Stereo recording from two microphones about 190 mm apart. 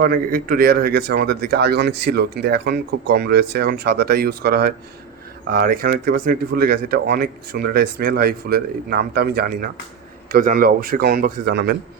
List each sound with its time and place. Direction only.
0.0 s speech: 50° right (ahead or behind)